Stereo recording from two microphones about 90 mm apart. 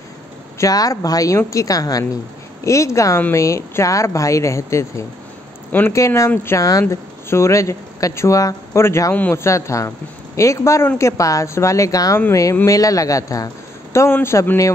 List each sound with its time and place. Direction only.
0.6 s speech: 40° left (ahead or behind)
5.7 s speech: 20° left (ahead or behind)
5.9 s speech: 35° left (ahead or behind)
13.9 s a man's voice: 30° left (ahead or behind)